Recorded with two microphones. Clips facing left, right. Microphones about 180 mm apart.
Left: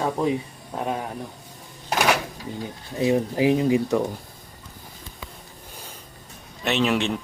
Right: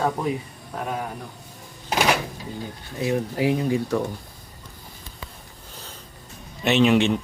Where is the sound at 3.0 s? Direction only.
20° left (ahead or behind).